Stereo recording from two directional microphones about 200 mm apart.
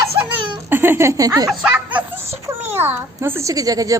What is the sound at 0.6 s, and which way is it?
A child's voice, 10° right (ahead or behind).